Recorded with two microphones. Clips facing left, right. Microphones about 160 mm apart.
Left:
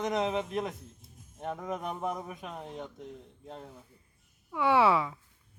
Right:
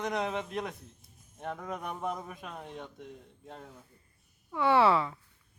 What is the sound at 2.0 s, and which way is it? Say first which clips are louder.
Speech: even; centre (ahead or behind).